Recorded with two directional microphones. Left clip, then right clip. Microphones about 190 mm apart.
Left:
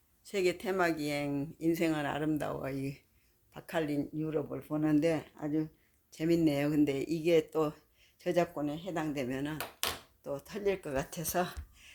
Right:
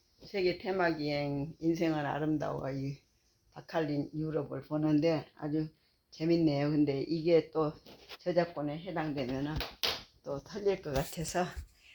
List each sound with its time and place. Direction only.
0.3 s speech: 30° left (ahead or behind)
8.2 s speech: 40° left (ahead or behind); by 11.5 s 15° left (ahead or behind)